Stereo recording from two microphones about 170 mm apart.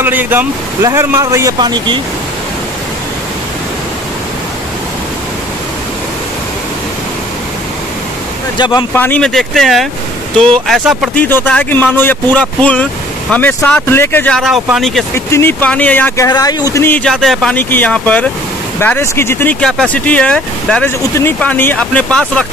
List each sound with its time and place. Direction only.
0.0 s speech: 10° right (ahead or behind)
8.5 s speech: 25° left (ahead or behind)
8.9 s speech: 10° left (ahead or behind)
11.2 s speech: 10° left (ahead or behind)
15.1 s speech: 15° left (ahead or behind)
16.3 s speech: 25° left (ahead or behind)
16.7 s speech: 10° left (ahead or behind)
17.1 s speech: centre (ahead or behind)